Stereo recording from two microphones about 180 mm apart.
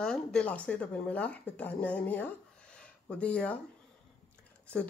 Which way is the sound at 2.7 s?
5° left (ahead or behind).